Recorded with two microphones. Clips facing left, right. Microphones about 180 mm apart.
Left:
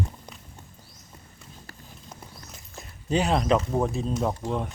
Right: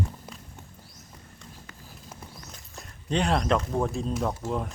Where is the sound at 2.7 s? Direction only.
5° left (ahead or behind).